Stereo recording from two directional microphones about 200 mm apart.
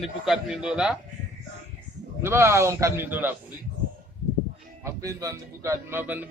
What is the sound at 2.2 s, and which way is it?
Speech, 15° right (ahead or behind).